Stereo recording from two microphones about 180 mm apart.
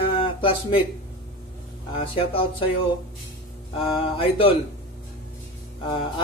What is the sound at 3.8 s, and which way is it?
Speech, 30° left (ahead or behind).